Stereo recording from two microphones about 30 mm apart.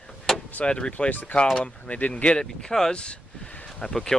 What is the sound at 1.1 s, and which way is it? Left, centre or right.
Speech, left.